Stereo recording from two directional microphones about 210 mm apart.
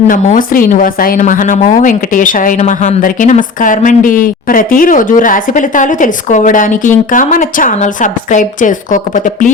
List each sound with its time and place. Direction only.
0.1 s a woman's voice: 40° left (ahead or behind)